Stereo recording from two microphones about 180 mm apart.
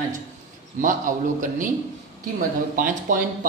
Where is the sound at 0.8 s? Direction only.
45° right (ahead or behind).